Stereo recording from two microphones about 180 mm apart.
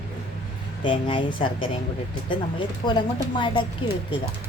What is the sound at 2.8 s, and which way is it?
A woman's voice, 25° left (ahead or behind).